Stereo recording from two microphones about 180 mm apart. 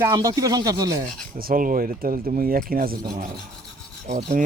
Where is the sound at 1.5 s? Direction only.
50° right (ahead or behind).